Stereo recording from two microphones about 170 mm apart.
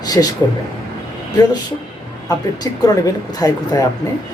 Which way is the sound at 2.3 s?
20° left (ahead or behind).